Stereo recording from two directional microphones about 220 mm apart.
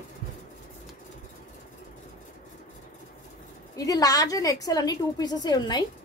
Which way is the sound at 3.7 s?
15° left (ahead or behind).